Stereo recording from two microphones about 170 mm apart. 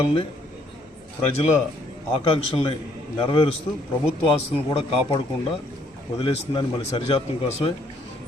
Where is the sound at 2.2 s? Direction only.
30° left (ahead or behind).